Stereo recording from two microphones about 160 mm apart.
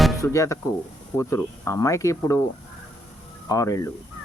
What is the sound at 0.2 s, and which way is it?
A man's voice, 20° left (ahead or behind).